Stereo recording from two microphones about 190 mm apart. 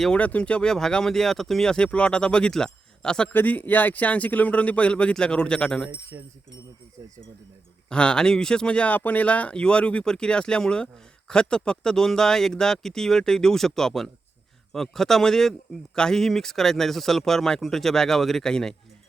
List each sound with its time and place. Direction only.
0.0 s speech: 5° left (ahead or behind)
6.1 s speech: 15° right (ahead or behind)
7.9 s speech: 5° left (ahead or behind)